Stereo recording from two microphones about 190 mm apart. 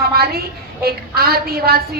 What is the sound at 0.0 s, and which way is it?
A woman's voice, 55° right (ahead or behind).